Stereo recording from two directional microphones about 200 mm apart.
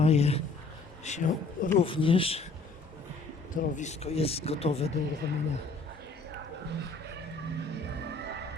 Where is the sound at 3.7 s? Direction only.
35° left (ahead or behind).